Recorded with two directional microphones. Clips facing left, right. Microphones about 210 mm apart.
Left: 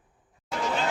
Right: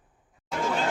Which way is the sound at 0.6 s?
50° right (ahead or behind).